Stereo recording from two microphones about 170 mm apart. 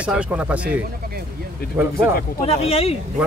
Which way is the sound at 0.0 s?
5° right (ahead or behind).